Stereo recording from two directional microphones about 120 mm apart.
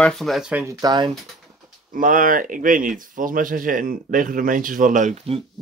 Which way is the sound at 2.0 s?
90° right.